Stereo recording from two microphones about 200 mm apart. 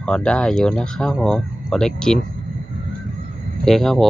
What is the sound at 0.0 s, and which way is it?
Speech, 5° left (ahead or behind).